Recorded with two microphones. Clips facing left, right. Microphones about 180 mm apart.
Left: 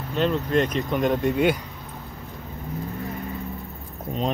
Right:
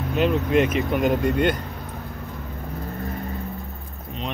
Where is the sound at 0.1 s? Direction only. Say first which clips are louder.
Right 2 dB; 10° right (ahead or behind).